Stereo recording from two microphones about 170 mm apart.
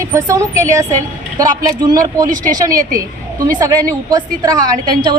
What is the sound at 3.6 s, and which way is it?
A woman's voice, 20° right (ahead or behind).